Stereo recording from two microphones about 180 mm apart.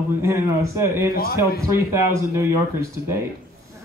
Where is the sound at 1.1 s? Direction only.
55° left (ahead or behind).